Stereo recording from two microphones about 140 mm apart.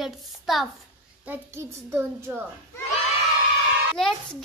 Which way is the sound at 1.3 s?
15° right (ahead or behind).